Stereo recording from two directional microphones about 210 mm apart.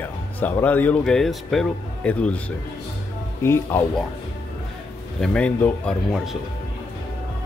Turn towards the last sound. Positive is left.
turn(degrees=0)  # may be behind; listen again after turning